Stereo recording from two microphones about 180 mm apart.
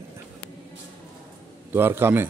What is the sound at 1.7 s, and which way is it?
Speech, 10° right (ahead or behind).